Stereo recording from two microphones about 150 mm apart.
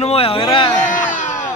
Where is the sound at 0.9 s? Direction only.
55° left (ahead or behind).